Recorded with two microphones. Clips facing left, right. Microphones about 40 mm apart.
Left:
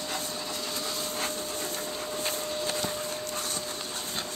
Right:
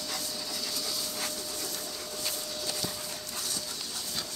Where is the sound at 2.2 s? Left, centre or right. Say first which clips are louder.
Left 4 dB; left.